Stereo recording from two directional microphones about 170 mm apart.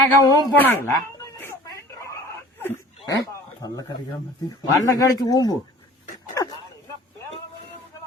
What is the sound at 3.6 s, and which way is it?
Speech, 20° left (ahead or behind).